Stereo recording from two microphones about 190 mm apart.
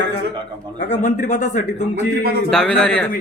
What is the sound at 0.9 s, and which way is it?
Speech, 40° left (ahead or behind).